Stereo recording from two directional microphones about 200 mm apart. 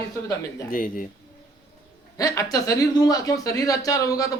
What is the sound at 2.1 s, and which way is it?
Speech, 15° left (ahead or behind).